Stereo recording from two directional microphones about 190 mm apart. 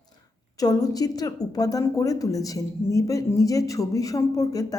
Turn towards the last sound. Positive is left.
turn(degrees=20)  # may be behind; listen again after turning